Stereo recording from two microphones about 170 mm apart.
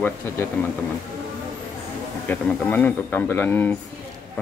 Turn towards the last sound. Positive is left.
turn(degrees=10)  # may be behind; listen again after turning